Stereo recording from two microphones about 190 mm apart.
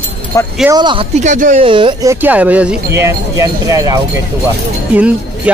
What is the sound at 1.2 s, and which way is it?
Speech, 40° right (ahead or behind).